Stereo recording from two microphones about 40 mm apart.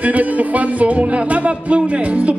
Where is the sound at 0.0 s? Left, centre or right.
Right.